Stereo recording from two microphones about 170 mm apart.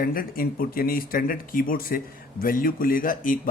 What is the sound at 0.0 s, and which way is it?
Speech, 60° left (ahead or behind).